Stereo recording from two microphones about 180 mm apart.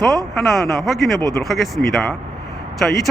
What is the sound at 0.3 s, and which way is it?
Speech, centre (ahead or behind).